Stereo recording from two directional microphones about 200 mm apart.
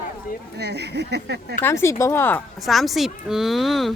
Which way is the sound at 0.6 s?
55° right (ahead or behind).